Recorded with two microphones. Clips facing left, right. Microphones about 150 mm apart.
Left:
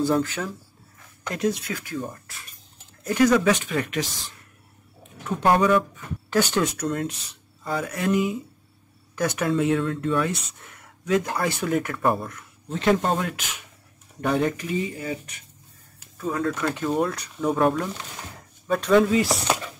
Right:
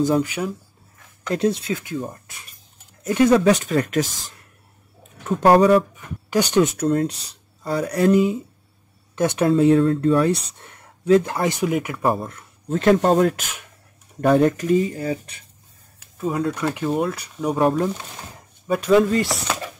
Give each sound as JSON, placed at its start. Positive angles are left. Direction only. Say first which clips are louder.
{"t": 0.0, "sound": "speech", "louder": "right 3 dB", "side_deg": -15}
{"t": 1.3, "sound": "speech", "louder": "right 5 dB", "side_deg": -30}
{"t": 3.1, "sound": "speech", "louder": "right 4 dB", "side_deg": -25}
{"t": 5.4, "sound": "speech", "louder": "right 5 dB", "side_deg": -35}
{"t": 6.3, "sound": "speech", "louder": "right 4 dB", "side_deg": -15}
{"t": 11.4, "sound": "speech", "louder": "right 3 dB", "side_deg": -15}
{"t": 12.2, "sound": "speech", "louder": "right 3 dB", "side_deg": -30}
{"t": 12.6, "sound": "speech", "louder": "right 5 dB", "side_deg": -45}
{"t": 16.2, "sound": "speech", "louder": "right 4 dB", "side_deg": -20}
{"t": 16.5, "sound": "speech", "louder": "right 2 dB", "side_deg": -10}
{"t": 17.6, "sound": "speech", "louder": "right 4 dB", "side_deg": -30}
{"t": 18.7, "sound": "speech", "louder": "right 2 dB", "side_deg": -5}
{"t": 19.0, "sound": "chopping", "louder": "even", "side_deg": 0}